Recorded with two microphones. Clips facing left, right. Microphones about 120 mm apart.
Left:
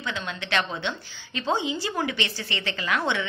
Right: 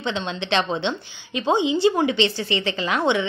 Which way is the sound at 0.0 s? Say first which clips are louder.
Right 6 dB; 25° right (ahead or behind).